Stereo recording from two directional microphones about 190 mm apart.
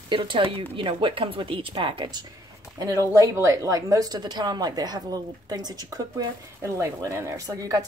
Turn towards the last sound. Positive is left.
turn(degrees=-15)  # may be behind; listen again after turning